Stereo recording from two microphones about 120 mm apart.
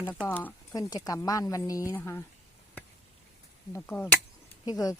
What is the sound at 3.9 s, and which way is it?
Speech, 10° left (ahead or behind).